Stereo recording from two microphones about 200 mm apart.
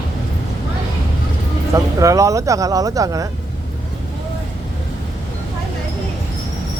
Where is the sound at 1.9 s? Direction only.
15° right (ahead or behind).